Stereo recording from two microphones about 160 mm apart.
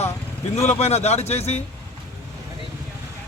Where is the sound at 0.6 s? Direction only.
45° left (ahead or behind).